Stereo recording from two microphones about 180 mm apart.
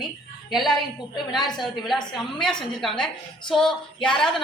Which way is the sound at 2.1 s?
5° left (ahead or behind).